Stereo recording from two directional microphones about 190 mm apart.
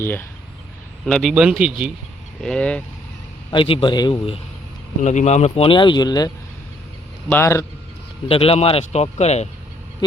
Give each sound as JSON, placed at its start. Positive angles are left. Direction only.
{"t": 0.0, "sound": "a man's voice", "side_deg": 10}
{"t": 3.5, "sound": "speech", "side_deg": 25}
{"t": 5.0, "sound": "a man's voice", "side_deg": 35}
{"t": 8.3, "sound": "speech", "side_deg": 30}